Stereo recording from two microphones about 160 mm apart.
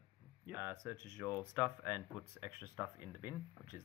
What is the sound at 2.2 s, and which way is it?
Speech, 15° right (ahead or behind).